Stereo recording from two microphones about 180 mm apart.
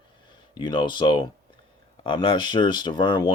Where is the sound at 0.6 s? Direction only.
25° left (ahead or behind).